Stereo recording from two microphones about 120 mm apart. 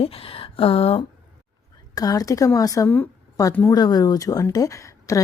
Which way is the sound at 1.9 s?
30° left (ahead or behind).